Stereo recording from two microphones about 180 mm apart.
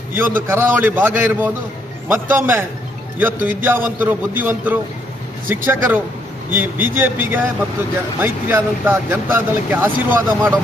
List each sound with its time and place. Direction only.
0.2 s speech: 10° right (ahead or behind)